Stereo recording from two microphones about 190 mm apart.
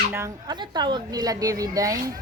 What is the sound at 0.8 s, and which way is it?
A woman's voice, 20° right (ahead or behind).